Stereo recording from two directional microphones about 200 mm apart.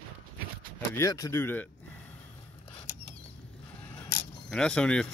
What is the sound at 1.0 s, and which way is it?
Speech, 15° left (ahead or behind).